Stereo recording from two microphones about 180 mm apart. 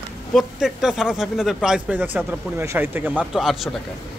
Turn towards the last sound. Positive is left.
turn(degrees=0)  # may be behind; listen again after turning